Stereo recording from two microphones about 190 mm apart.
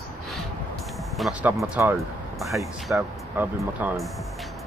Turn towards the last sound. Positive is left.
turn(degrees=-10)  # may be behind; listen again after turning